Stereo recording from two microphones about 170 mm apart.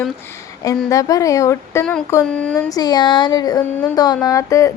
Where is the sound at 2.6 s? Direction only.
20° left (ahead or behind).